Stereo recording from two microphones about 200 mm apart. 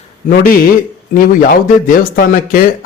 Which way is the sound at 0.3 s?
45° left (ahead or behind).